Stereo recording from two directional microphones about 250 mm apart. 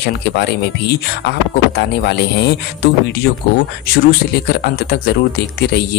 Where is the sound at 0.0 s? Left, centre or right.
Left.